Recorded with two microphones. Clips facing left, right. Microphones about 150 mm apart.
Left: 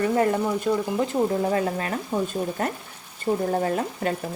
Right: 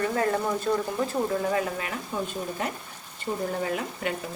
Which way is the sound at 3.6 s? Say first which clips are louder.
Left 4 dB; 40° left (ahead or behind).